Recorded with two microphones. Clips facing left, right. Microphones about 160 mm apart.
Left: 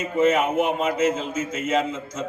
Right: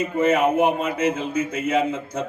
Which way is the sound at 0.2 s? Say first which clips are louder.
Right 1 dB; 60° right (ahead or behind).